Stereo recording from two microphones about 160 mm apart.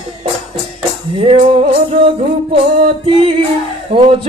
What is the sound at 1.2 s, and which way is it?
Music, 40° right (ahead or behind).